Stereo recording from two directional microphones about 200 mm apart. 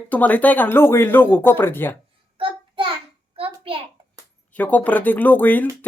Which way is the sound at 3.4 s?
25° right (ahead or behind).